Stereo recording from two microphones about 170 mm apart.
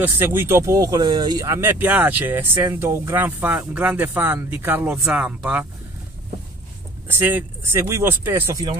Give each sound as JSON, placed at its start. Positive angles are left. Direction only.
{"t": 0.0, "sound": "speech", "side_deg": -10}
{"t": 7.1, "sound": "speech", "side_deg": -10}